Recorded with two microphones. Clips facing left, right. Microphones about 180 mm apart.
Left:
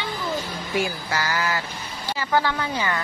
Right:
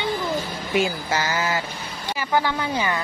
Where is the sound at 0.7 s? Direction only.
20° right (ahead or behind).